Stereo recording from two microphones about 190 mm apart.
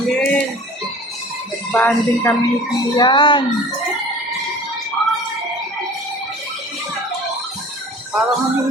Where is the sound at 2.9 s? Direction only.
25° left (ahead or behind).